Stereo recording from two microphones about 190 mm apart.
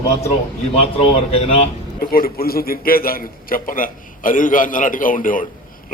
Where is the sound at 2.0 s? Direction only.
50° left (ahead or behind).